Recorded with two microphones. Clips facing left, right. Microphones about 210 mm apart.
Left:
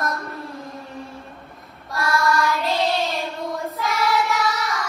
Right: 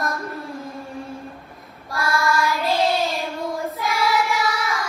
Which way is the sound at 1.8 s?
Centre (ahead or behind).